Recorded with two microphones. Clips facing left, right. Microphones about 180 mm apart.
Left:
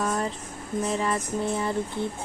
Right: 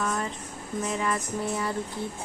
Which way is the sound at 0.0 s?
35° left (ahead or behind).